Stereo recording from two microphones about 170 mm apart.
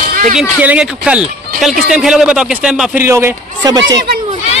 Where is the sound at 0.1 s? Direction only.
50° right (ahead or behind).